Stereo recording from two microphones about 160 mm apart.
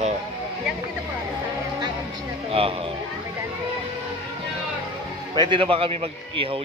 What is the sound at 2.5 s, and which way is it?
Speech, 35° right (ahead or behind).